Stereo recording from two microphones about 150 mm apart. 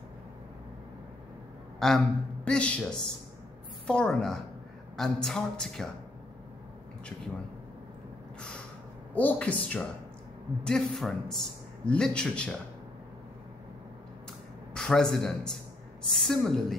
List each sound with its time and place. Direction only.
1.8 s a man's voice: 5° left (ahead or behind)
9.1 s a man's voice: 10° left (ahead or behind)
14.7 s a man's voice: 5° left (ahead or behind)